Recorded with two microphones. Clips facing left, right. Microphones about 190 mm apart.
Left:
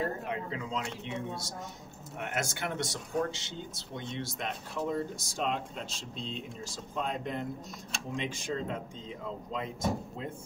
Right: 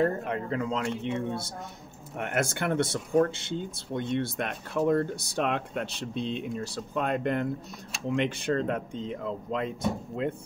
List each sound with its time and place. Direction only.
0.3 s speech: 55° right (ahead or behind)